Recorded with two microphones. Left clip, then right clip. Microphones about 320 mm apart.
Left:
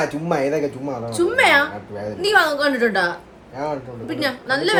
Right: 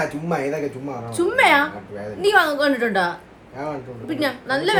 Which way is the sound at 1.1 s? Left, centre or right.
Centre.